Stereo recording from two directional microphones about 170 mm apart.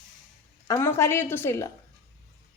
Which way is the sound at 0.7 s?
15° left (ahead or behind).